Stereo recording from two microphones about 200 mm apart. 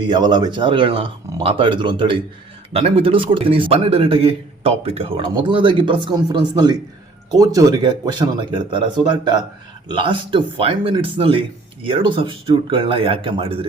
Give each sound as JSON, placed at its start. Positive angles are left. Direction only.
{"t": 0.0, "sound": "a man's voice", "side_deg": -20}